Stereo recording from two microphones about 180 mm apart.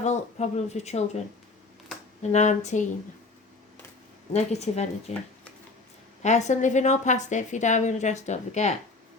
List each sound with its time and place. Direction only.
0.0 s a woman's voice: 40° left (ahead or behind)
2.2 s a woman's voice: 40° left (ahead or behind)
4.3 s a woman's voice: 35° left (ahead or behind)
6.2 s a woman's voice: 40° left (ahead or behind)